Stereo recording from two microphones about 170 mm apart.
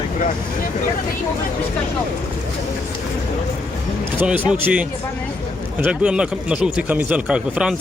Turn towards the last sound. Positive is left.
turn(degrees=-5)  # may be behind; listen again after turning